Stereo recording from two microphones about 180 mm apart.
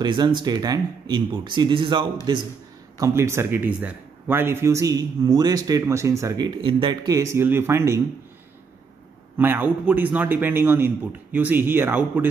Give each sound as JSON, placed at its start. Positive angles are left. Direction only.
{"t": 0.0, "sound": "speech", "side_deg": -25}
{"t": 3.0, "sound": "speech", "side_deg": -15}
{"t": 9.4, "sound": "speech", "side_deg": -10}